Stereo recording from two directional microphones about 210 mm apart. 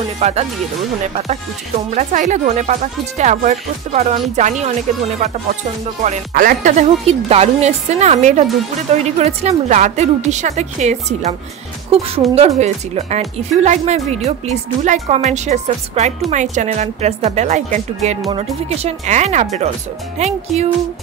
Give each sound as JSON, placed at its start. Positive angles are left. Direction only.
{"t": 0.2, "sound": "speech", "side_deg": -30}
{"t": 6.0, "sound": "speech", "side_deg": -40}
{"t": 12.4, "sound": "speech", "side_deg": -30}